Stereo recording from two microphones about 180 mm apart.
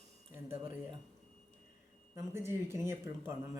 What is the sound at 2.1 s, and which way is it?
Speech, 15° right (ahead or behind).